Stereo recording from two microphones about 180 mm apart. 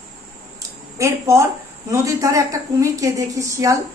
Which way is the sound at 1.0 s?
15° right (ahead or behind).